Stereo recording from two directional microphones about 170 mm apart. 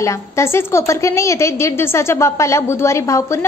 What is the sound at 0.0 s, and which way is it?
A woman's voice, 15° left (ahead or behind).